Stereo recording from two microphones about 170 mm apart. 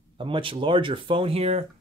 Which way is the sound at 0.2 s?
30° right (ahead or behind).